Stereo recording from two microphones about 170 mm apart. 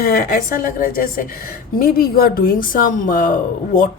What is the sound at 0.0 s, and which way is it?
Speech, 60° left (ahead or behind).